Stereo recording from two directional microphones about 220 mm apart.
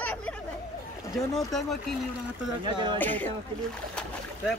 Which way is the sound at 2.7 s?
20° right (ahead or behind).